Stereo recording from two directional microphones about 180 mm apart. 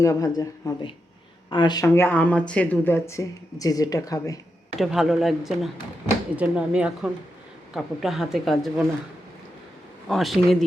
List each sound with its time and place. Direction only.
0.0 s speech: 20° left (ahead or behind)
4.8 s a woman's voice: centre (ahead or behind)
10.1 s a woman's voice: centre (ahead or behind)